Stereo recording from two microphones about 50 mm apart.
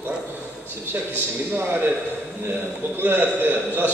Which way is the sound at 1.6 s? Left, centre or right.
Right.